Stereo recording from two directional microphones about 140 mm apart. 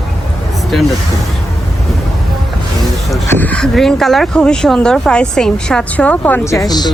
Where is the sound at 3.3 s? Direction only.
10° left (ahead or behind); by 6.9 s 30° left (ahead or behind).